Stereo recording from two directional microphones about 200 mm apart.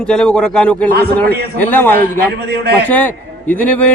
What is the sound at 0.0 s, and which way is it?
A man's voice, 5° left (ahead or behind).